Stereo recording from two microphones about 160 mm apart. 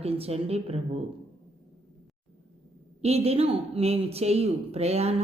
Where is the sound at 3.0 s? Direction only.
40° right (ahead or behind).